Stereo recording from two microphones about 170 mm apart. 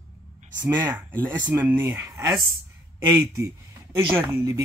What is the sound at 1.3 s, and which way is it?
A woman's voice, 10° right (ahead or behind).